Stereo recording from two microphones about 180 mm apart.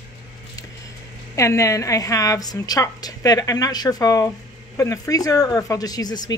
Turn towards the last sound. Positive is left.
turn(degrees=20)  # may be behind; listen again after turning